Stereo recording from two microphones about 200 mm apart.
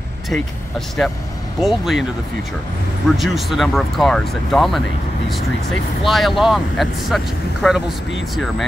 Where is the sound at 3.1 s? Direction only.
Centre (ahead or behind).